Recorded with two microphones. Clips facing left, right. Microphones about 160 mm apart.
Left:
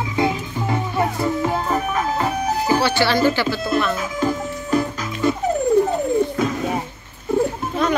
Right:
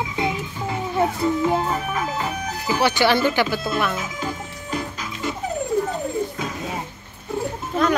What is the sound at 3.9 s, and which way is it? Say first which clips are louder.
Music: left 6 dB; 45° left (ahead or behind).